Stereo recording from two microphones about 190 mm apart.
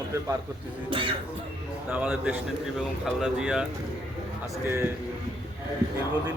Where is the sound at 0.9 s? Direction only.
25° right (ahead or behind).